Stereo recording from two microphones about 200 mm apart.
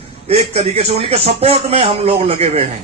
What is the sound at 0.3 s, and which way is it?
A man's voice, 30° right (ahead or behind).